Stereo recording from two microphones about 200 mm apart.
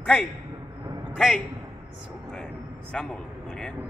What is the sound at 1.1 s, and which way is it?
Speech, centre (ahead or behind).